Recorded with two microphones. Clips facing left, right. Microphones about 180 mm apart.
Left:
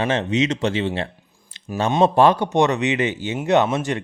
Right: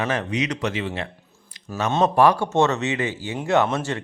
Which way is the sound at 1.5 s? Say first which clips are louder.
Left 3 dB; 30° left (ahead or behind).